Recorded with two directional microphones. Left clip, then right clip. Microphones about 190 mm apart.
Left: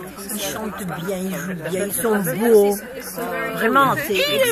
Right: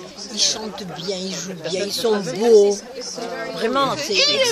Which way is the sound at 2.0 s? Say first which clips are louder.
Right 1 dB; 25° right (ahead or behind).